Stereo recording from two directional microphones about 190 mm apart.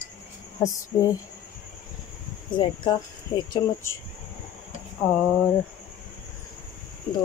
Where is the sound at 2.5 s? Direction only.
25° left (ahead or behind).